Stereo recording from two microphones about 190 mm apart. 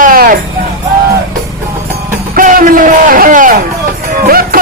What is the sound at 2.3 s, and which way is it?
Speech, 45° right (ahead or behind).